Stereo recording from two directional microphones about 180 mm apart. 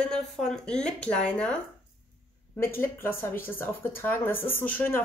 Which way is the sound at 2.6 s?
15° left (ahead or behind).